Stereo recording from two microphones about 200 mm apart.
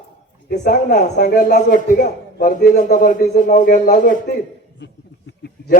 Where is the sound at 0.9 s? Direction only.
40° left (ahead or behind).